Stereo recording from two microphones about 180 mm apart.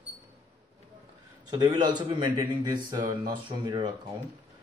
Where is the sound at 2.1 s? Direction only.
25° right (ahead or behind).